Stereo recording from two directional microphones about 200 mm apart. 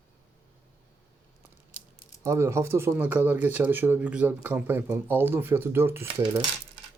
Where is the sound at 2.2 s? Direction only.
15° right (ahead or behind).